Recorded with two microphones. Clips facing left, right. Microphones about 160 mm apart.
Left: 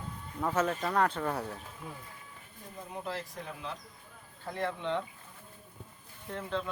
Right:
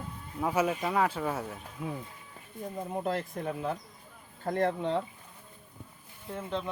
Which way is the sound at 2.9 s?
50° right (ahead or behind).